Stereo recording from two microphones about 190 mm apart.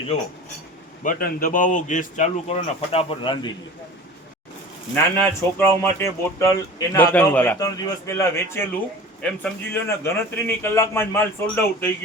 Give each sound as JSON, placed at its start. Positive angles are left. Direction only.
{"t": 1.0, "sound": "speech", "side_deg": 50}
{"t": 5.1, "sound": "a man's voice", "side_deg": 10}
{"t": 7.6, "sound": "a man's voice", "side_deg": 15}